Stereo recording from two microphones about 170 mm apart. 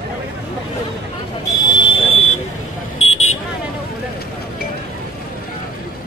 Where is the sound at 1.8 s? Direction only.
30° left (ahead or behind).